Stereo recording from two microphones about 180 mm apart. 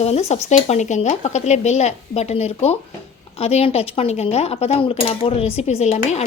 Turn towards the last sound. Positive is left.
turn(degrees=35)  # may be behind; listen again after turning